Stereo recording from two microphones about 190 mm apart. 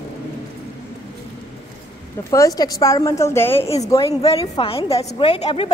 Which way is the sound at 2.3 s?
20° left (ahead or behind).